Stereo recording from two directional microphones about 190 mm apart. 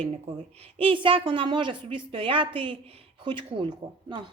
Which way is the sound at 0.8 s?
30° right (ahead or behind).